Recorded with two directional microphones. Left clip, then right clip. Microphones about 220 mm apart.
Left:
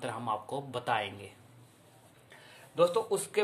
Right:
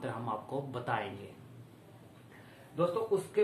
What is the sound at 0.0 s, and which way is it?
A man's voice, 45° left (ahead or behind).